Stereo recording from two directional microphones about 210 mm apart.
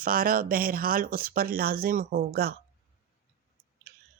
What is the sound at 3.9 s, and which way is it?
Chewing, 45° right (ahead or behind).